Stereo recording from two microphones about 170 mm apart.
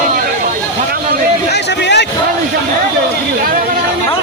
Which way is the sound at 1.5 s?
90° left.